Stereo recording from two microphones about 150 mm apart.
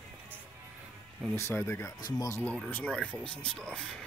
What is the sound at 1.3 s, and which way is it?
Speech, 15° left (ahead or behind).